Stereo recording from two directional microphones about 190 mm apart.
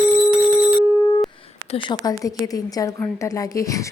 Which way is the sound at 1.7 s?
20° left (ahead or behind).